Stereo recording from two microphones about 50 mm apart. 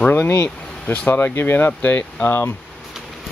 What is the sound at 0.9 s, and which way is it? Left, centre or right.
Speech, left.